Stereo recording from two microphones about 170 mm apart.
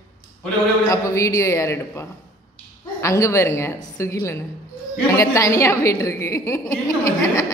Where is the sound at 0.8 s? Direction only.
20° left (ahead or behind).